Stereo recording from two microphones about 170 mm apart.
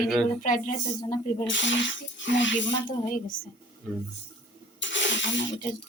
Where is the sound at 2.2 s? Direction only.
90° left.